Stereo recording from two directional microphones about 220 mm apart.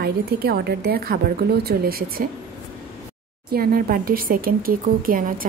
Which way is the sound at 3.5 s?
40° right (ahead or behind).